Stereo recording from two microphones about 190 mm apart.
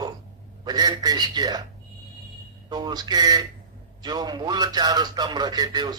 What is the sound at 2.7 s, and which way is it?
A man's voice, 20° right (ahead or behind).